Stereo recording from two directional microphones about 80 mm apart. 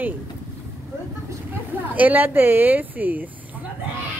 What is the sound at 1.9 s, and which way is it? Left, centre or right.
Speech, right.